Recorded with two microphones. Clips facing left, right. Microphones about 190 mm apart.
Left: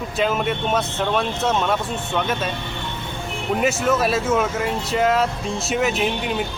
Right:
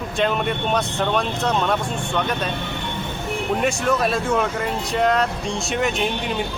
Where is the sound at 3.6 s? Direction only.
5° left (ahead or behind).